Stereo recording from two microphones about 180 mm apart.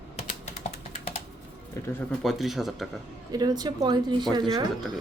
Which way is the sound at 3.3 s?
20° right (ahead or behind).